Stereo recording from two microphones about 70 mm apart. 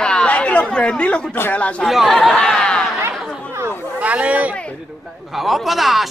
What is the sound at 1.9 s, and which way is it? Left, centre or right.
Speech, centre.